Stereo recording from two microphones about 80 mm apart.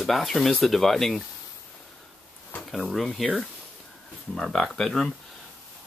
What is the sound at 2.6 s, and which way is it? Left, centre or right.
Speech, centre.